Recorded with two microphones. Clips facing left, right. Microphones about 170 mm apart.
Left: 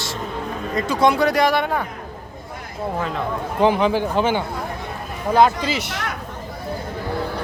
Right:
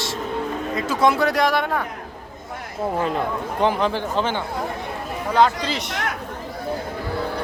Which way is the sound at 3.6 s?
Centre (ahead or behind).